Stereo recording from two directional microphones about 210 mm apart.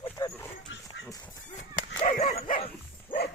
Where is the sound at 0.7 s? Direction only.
60° left (ahead or behind).